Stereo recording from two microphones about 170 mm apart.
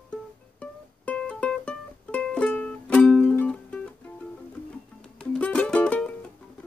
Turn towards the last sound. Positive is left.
turn(degrees=5)  # may be behind; listen again after turning